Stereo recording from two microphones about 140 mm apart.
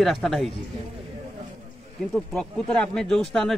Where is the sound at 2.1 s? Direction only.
5° left (ahead or behind).